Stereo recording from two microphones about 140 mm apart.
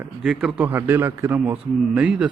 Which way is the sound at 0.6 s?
15° right (ahead or behind).